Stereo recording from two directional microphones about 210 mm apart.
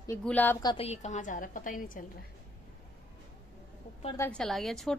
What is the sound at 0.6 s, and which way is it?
A woman's voice, 25° left (ahead or behind).